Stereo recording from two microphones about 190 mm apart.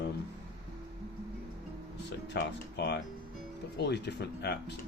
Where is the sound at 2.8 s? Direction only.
60° left (ahead or behind).